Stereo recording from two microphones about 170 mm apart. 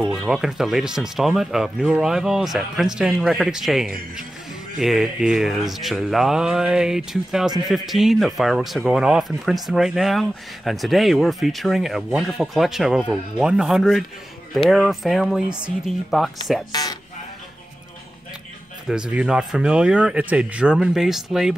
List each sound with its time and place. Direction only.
0.0 s speech: 5° right (ahead or behind)
16.7 s speech: 25° left (ahead or behind)
18.9 s speech: 5° right (ahead or behind)